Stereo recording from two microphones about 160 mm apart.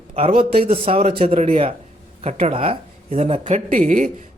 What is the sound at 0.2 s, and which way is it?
A man's voice, 35° right (ahead or behind).